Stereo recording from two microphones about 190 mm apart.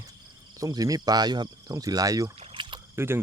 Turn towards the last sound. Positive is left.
turn(degrees=-15)  # may be behind; listen again after turning